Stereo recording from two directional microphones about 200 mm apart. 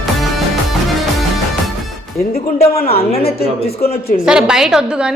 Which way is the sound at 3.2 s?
50° left (ahead or behind).